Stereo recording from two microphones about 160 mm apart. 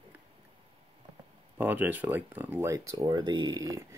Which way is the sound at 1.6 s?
10° right (ahead or behind).